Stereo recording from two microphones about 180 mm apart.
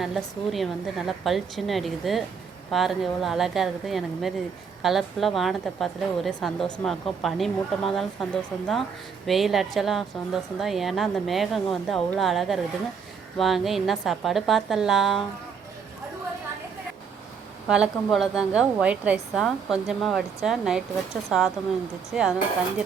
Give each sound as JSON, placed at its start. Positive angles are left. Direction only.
{"t": 0.0, "sound": "a woman's voice", "side_deg": 0}
{"t": 17.7, "sound": "a woman's voice", "side_deg": -5}